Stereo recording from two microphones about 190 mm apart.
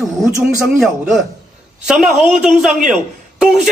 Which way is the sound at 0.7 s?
Centre (ahead or behind).